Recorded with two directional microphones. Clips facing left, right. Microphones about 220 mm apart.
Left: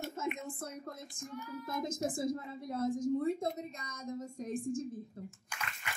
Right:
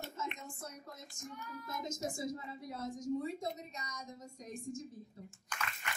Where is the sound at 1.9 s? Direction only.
50° left (ahead or behind).